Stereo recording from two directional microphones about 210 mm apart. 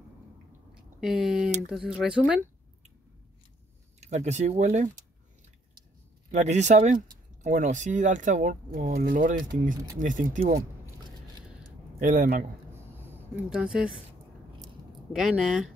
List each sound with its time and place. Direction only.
1.0 s speech: 5° right (ahead or behind)
4.0 s speech: 35° right (ahead or behind)
6.3 s speech: 35° right (ahead or behind)
12.0 s speech: 40° right (ahead or behind)
12.7 s a sound: 10° right (ahead or behind)
15.1 s speech: 5° right (ahead or behind)